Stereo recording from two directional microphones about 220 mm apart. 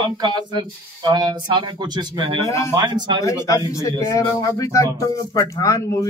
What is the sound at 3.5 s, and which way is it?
Speech, 15° left (ahead or behind).